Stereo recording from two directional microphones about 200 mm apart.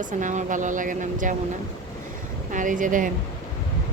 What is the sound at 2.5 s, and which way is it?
Speech, 40° right (ahead or behind).